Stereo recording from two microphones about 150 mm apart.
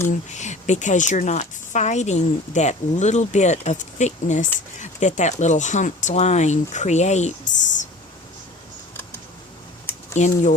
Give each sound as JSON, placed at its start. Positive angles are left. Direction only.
{"t": 0.1, "sound": "a woman's voice", "side_deg": 50}
{"t": 10.2, "sound": "a woman's voice", "side_deg": 55}